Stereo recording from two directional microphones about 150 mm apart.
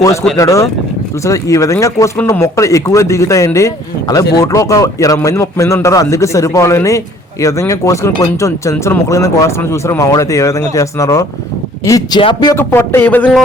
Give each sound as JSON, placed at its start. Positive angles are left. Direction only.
{"t": 0.0, "sound": "a man's voice", "side_deg": 20}
{"t": 12.5, "sound": "speech", "side_deg": 15}